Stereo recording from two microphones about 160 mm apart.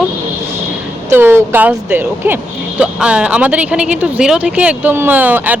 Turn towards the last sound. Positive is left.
turn(degrees=-10)  # may be behind; listen again after turning